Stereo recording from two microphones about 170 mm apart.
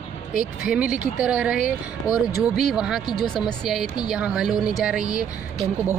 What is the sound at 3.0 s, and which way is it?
Speech, 25° left (ahead or behind).